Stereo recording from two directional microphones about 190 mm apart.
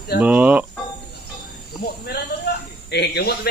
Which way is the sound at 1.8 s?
55° left (ahead or behind).